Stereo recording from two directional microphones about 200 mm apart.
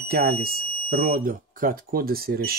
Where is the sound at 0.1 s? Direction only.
50° right (ahead or behind).